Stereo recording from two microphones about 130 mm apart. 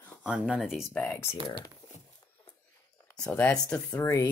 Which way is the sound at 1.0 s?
20° left (ahead or behind).